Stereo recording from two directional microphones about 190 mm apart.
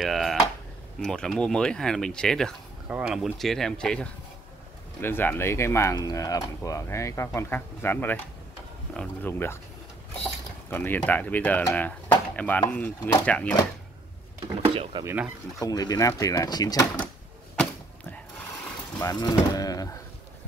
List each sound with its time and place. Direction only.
0.0 s speech: centre (ahead or behind)
10.7 s speech: 10° left (ahead or behind)
14.6 s speech: 30° right (ahead or behind)
15.6 s speech: 20° left (ahead or behind)
18.9 s speech: 20° left (ahead or behind)